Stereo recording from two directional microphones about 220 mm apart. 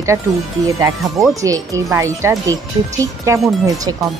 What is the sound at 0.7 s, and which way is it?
Speech, 15° right (ahead or behind).